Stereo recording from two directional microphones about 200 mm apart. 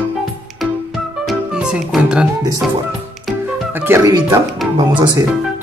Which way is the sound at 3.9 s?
10° right (ahead or behind).